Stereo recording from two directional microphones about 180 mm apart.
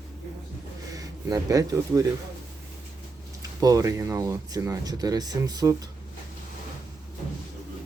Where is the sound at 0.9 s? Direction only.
20° right (ahead or behind).